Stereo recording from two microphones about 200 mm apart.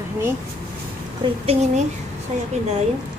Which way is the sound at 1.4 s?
30° right (ahead or behind).